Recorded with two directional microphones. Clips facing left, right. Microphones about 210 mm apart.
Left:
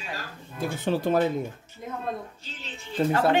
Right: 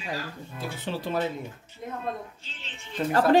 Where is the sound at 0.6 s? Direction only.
50° left (ahead or behind).